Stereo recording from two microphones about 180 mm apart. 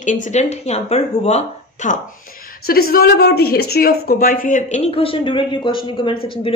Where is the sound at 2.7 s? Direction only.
55° left (ahead or behind).